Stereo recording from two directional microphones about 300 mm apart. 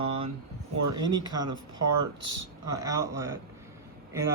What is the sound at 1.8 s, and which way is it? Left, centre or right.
Speech, right.